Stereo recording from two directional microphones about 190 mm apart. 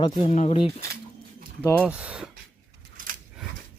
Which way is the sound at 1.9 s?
5° right (ahead or behind).